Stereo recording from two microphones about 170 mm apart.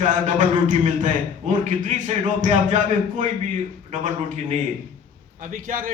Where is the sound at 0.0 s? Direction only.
45° right (ahead or behind).